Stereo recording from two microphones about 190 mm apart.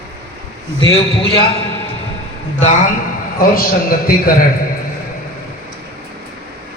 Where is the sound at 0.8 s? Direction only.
30° left (ahead or behind).